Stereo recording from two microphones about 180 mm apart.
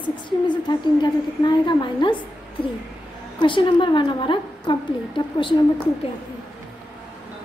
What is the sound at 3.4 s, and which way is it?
A woman's voice, 25° left (ahead or behind).